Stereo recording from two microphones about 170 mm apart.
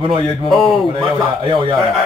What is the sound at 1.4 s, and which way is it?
Speech, 30° right (ahead or behind).